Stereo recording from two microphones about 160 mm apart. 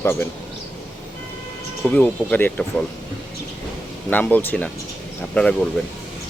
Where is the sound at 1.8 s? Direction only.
10° left (ahead or behind).